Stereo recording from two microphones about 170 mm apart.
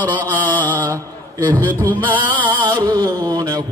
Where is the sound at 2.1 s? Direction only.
30° right (ahead or behind).